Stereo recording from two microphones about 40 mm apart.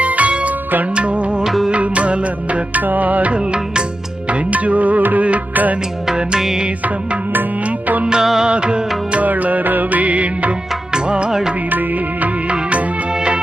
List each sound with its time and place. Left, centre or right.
0.0 s music: right
1.5 s music: centre
1.7 s music: right
3.4 s music: right
4.3 s music: right
6.1 s music: right
7.6 s music: right
8.2 s music: centre
8.4 s music: right
9.1 s music: right
10.9 s music of bollywood: right
11.3 s music: centre
11.7 s music of bollywood: right
12.5 s music: right